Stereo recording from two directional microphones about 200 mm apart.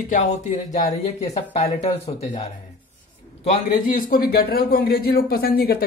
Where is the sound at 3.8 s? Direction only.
45° left (ahead or behind).